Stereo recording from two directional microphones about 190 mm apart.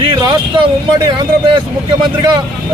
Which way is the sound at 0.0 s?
25° right (ahead or behind).